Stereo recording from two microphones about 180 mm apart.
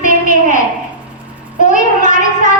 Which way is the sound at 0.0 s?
45° left (ahead or behind).